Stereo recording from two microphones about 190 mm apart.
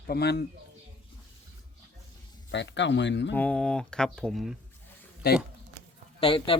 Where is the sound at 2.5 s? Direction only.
70° left (ahead or behind).